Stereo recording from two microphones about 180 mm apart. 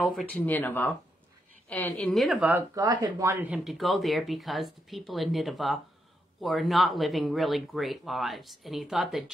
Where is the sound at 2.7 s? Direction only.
20° right (ahead or behind).